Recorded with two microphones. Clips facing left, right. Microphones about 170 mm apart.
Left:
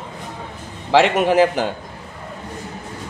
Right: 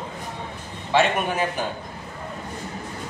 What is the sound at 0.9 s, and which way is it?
Speech, 90° left.